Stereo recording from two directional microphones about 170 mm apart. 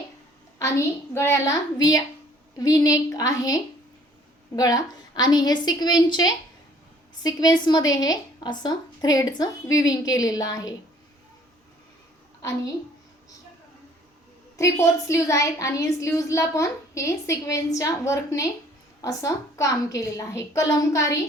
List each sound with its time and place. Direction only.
0.6 s a woman's voice: 15° left (ahead or behind)
14.5 s a woman's voice: 15° left (ahead or behind)